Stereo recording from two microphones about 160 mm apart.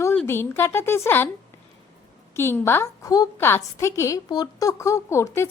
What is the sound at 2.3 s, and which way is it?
A woman's voice, 15° left (ahead or behind).